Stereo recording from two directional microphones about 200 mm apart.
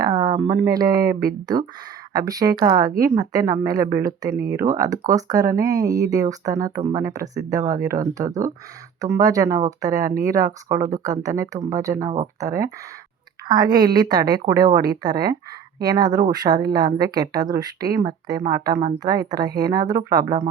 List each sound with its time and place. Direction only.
0.0 s a sound: 20° right (ahead or behind)
0.6 s speech: 20° right (ahead or behind)
13.7 s speech: 20° right (ahead or behind)